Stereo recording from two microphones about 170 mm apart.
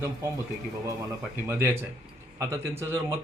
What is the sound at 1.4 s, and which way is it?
A man's voice, 15° right (ahead or behind).